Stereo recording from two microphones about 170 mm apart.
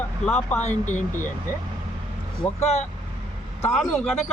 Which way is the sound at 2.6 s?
40° left (ahead or behind).